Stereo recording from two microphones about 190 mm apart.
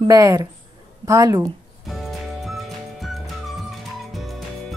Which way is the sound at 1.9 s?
Centre (ahead or behind).